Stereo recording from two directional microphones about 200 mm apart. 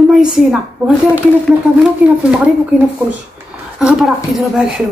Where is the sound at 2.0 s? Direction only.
10° right (ahead or behind).